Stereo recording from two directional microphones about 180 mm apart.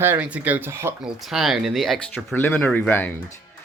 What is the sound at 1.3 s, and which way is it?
Speech, centre (ahead or behind).